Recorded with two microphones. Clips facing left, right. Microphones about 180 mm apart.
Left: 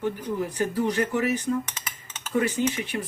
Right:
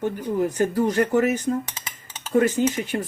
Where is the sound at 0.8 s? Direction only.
45° right (ahead or behind).